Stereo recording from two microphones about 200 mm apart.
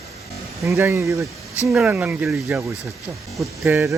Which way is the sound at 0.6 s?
15° right (ahead or behind).